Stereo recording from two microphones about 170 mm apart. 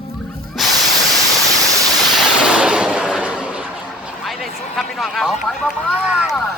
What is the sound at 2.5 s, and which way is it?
Gunshot, 5° right (ahead or behind).